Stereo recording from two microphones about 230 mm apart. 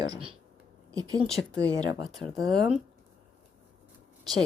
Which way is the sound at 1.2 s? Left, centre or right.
Centre.